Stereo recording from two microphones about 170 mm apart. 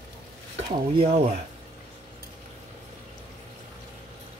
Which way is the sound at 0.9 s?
35° right (ahead or behind).